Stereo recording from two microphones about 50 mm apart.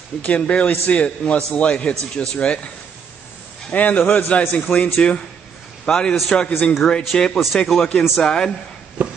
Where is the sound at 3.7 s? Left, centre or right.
Left.